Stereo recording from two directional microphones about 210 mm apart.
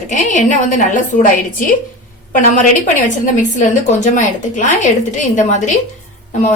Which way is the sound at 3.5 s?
35° left (ahead or behind).